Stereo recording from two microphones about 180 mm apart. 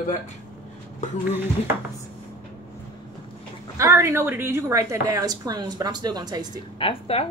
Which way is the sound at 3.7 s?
15° right (ahead or behind).